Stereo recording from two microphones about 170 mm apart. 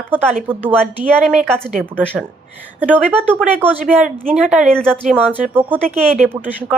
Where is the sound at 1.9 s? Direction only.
5° left (ahead or behind).